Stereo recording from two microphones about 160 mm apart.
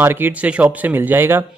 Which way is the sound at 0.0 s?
15° right (ahead or behind).